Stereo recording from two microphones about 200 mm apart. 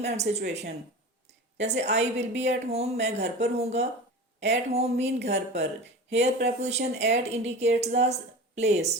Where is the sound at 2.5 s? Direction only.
30° right (ahead or behind).